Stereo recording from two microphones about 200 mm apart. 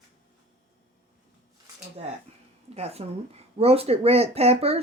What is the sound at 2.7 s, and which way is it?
Speech, 30° right (ahead or behind).